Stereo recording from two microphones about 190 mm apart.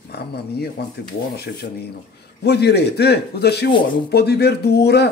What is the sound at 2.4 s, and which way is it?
Speech, 60° left (ahead or behind).